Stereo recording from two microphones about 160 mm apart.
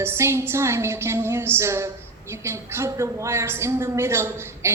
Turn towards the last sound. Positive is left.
turn(degrees=-15)  # may be behind; listen again after turning